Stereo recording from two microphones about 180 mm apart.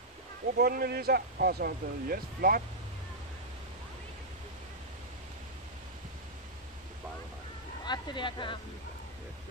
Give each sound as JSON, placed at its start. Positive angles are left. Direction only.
{"t": 0.6, "sound": "speech", "side_deg": -60}
{"t": 7.8, "sound": "speech", "side_deg": 25}